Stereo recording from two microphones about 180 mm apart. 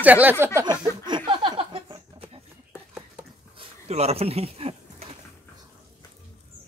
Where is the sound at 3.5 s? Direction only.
35° right (ahead or behind).